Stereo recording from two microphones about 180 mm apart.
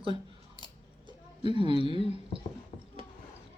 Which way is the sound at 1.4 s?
25° right (ahead or behind).